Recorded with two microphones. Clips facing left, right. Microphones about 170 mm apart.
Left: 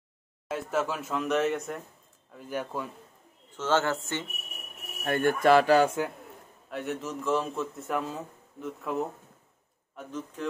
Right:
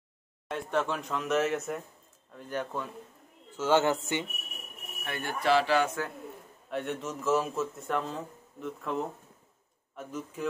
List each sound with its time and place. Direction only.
0.5 s speech: 5° left (ahead or behind)
3.5 s a man's voice: 15° right (ahead or behind)
5.0 s speech: 50° left (ahead or behind)
6.7 s speech: centre (ahead or behind)
9.9 s a man's voice: 10° right (ahead or behind)